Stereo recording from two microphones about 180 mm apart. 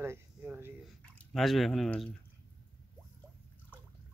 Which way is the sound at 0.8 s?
Centre (ahead or behind).